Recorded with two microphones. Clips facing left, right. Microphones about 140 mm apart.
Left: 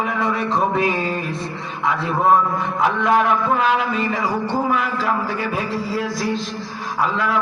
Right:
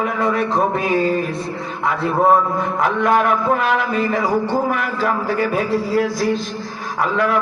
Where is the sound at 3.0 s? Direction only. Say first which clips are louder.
Right 2 dB; 55° right (ahead or behind).